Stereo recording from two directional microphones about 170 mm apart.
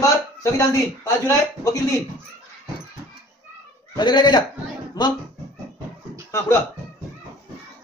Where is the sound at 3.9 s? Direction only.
25° left (ahead or behind).